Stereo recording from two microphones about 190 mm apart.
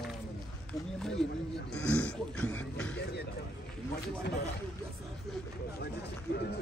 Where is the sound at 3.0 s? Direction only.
60° left (ahead or behind).